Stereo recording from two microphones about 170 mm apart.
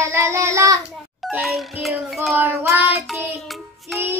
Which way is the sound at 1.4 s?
Centre (ahead or behind).